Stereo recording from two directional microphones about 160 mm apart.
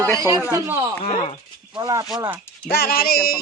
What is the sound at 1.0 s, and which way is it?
Speech, 45° left (ahead or behind).